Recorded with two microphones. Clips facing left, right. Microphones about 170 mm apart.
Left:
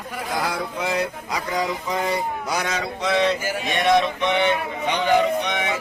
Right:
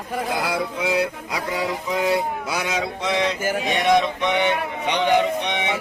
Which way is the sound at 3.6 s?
20° right (ahead or behind).